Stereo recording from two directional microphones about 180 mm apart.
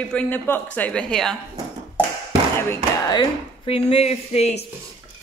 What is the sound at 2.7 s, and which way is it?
Speech, 25° left (ahead or behind).